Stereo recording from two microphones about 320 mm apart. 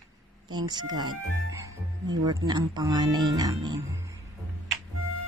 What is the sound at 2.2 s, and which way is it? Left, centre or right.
Speech, centre.